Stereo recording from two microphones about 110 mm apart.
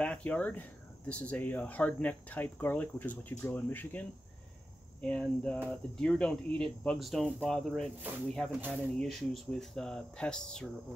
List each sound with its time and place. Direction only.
0.0 s speech: 10° left (ahead or behind)
5.0 s speech: 10° left (ahead or behind)
8.5 s speech: 15° right (ahead or behind)
9.0 s speech: centre (ahead or behind)